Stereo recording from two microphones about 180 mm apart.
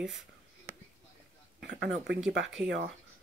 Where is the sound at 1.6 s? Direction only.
75° right (ahead or behind).